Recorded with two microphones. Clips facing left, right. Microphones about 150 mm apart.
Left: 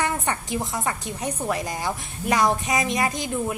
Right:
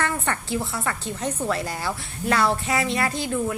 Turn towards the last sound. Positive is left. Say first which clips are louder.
# right 1 dB
turn(degrees=15)  # may be behind; listen again after turning